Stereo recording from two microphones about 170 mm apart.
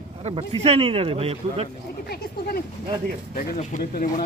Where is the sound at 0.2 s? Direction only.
35° right (ahead or behind).